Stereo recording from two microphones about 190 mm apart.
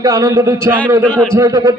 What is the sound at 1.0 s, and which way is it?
Speech, 5° left (ahead or behind).